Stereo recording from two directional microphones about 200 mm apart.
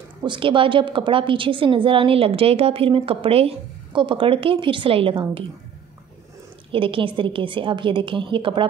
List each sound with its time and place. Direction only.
0.2 s a woman's voice: 25° right (ahead or behind)
6.7 s a woman's voice: 25° right (ahead or behind)